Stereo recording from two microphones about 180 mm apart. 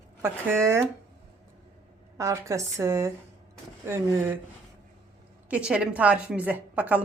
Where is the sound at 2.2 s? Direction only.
15° right (ahead or behind).